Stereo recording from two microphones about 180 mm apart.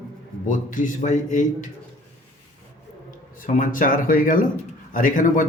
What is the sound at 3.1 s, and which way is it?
Speech, 50° left (ahead or behind).